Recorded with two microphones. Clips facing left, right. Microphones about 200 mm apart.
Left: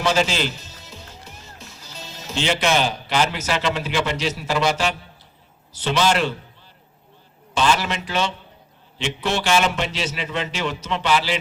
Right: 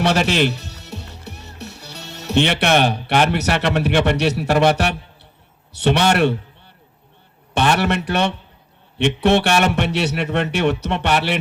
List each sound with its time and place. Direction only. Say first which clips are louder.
0.0 s a man's voice: right 4 dB; 65° right (ahead or behind)
7.5 s a man's voice: right 3 dB; 60° right (ahead or behind)